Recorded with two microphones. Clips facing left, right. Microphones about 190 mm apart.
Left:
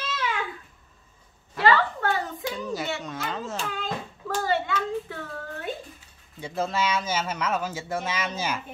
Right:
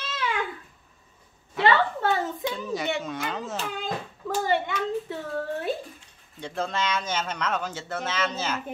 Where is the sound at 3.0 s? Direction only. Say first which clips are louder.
Right 1 dB; centre (ahead or behind); by 5.1 s 20° right (ahead or behind).